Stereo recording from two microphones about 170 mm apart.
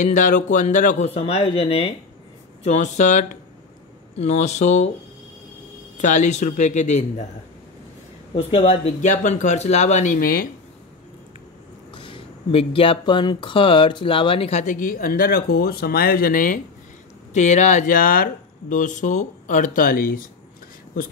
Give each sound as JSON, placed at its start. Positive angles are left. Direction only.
{"t": 0.0, "sound": "speech", "side_deg": 50}
{"t": 5.9, "sound": "speech", "side_deg": 45}
{"t": 8.4, "sound": "speech", "side_deg": 35}
{"t": 11.9, "sound": "speech", "side_deg": 30}
{"t": 17.3, "sound": "speech", "side_deg": 45}